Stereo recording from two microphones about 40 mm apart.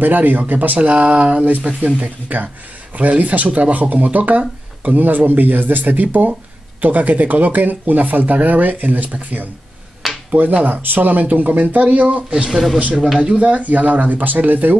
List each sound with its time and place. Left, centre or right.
0.0 s speech: right
12.4 s speech: centre
13.4 s speech: right